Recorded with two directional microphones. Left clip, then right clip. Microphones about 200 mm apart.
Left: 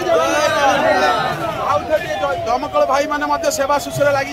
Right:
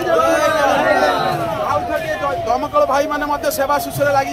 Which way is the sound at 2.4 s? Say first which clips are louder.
Right 2 dB; centre (ahead or behind).